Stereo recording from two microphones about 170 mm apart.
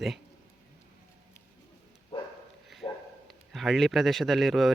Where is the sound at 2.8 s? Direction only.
25° left (ahead or behind).